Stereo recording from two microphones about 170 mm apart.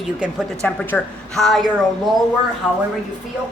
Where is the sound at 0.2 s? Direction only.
Centre (ahead or behind).